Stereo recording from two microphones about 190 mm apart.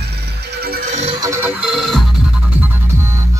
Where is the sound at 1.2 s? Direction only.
15° right (ahead or behind).